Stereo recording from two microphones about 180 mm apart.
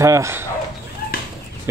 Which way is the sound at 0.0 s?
15° right (ahead or behind).